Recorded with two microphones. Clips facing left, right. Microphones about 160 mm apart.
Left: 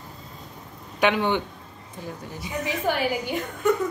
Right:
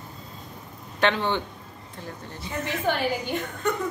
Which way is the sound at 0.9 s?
10° left (ahead or behind).